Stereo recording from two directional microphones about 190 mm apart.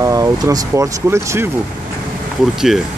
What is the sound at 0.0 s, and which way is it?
Speech, 15° right (ahead or behind).